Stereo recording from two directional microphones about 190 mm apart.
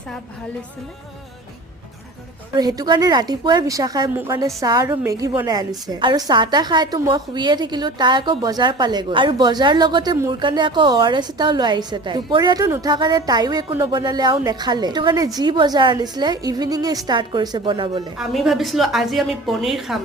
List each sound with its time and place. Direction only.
2.6 s a woman's voice: 20° right (ahead or behind)
18.2 s a woman's voice: centre (ahead or behind)